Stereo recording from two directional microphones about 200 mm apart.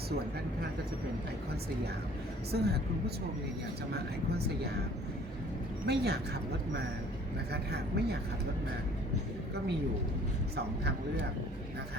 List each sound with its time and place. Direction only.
2.5 s speech: 55° right (ahead or behind)
3.9 s speech: 55° right (ahead or behind)
5.8 s speech: 55° right (ahead or behind)
7.5 s speech: 55° right (ahead or behind)